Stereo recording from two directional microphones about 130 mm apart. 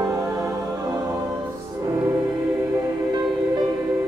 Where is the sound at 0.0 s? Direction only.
25° right (ahead or behind).